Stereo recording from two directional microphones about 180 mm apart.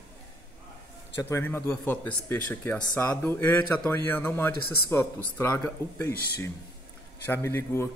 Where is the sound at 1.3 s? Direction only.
15° left (ahead or behind).